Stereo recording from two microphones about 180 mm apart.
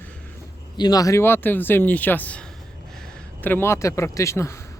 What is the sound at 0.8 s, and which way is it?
Speech, 20° left (ahead or behind).